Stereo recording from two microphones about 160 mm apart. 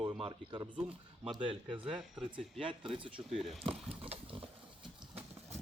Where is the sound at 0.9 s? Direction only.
5° right (ahead or behind).